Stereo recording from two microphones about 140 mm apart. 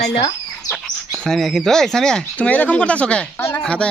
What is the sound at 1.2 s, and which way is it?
Speech, centre (ahead or behind).